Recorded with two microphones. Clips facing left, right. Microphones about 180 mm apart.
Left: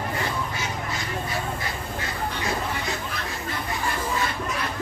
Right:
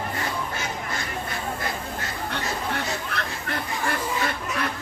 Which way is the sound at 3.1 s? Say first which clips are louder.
Right 2 dB; 65° right (ahead or behind).